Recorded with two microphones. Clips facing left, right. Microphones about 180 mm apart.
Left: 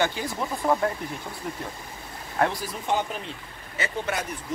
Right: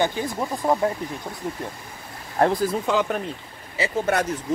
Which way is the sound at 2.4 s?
35° right (ahead or behind).